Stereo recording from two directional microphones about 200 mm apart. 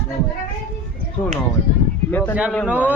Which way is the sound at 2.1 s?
10° left (ahead or behind).